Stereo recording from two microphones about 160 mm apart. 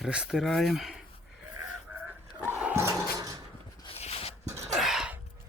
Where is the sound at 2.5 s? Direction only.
10° right (ahead or behind).